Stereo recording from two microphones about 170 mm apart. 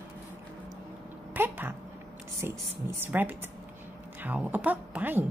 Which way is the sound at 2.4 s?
15° right (ahead or behind).